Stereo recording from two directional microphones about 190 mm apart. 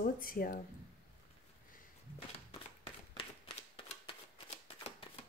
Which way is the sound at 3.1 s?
30° left (ahead or behind).